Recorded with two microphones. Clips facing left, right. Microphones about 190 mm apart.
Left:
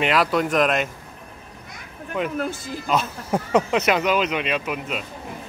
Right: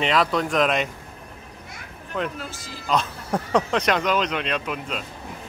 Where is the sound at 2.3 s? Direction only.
55° left (ahead or behind).